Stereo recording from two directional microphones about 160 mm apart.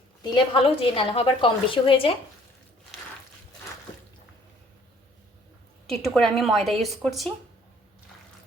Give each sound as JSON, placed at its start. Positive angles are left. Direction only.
{"t": 0.2, "sound": "a woman's voice", "side_deg": 30}
{"t": 5.9, "sound": "a woman's voice", "side_deg": 0}